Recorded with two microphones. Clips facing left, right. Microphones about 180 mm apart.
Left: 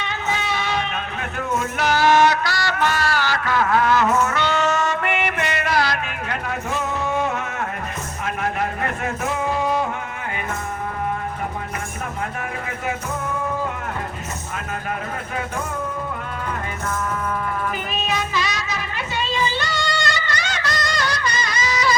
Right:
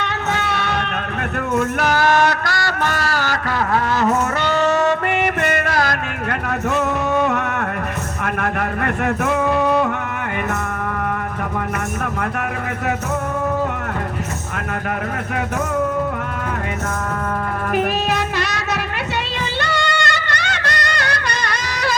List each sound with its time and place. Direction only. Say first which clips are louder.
0.0 s music: right 3 dB; 65° right (ahead or behind)
1.5 s a sound: right 3 dB; 55° right (ahead or behind)
6.7 s music: right 6 dB; 65° right (ahead or behind)
17.7 s music: right 6 dB; 65° right (ahead or behind)